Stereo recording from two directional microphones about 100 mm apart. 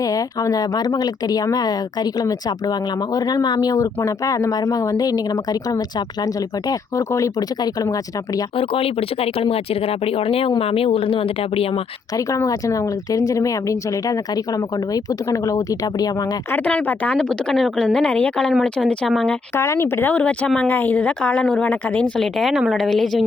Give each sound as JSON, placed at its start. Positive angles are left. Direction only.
{"t": 0.0, "sound": "speech", "side_deg": 35}
{"t": 3.2, "sound": "speech", "side_deg": 40}
{"t": 6.7, "sound": "speech", "side_deg": 30}
{"t": 8.5, "sound": "speech", "side_deg": 70}
{"t": 12.1, "sound": "speech", "side_deg": 35}
{"t": 16.5, "sound": "a woman's voice", "side_deg": 15}
{"t": 19.5, "sound": "speech", "side_deg": 30}
{"t": 20.1, "sound": "a woman's voice", "side_deg": 10}
{"t": 22.2, "sound": "a woman's voice", "side_deg": 0}